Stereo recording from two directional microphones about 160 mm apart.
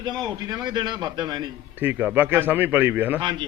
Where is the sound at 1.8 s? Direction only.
10° right (ahead or behind).